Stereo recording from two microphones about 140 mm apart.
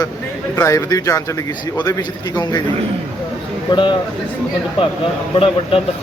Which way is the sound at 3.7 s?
35° left (ahead or behind).